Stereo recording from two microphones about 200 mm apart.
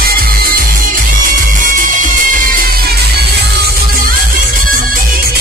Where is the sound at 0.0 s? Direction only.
45° right (ahead or behind).